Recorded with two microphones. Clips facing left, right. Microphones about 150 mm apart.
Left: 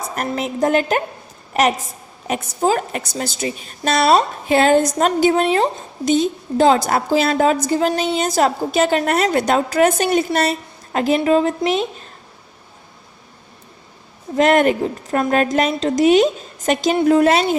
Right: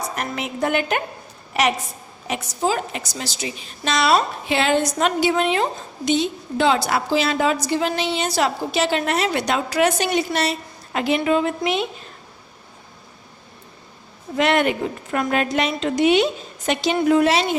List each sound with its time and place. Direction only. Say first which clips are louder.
0.2 s a woman's voice: left 6 dB; 40° left (ahead or behind)
2.2 s a woman's voice: left 4 dB; 50° left (ahead or behind)
14.3 s a woman's voice: left 5 dB; 45° left (ahead or behind)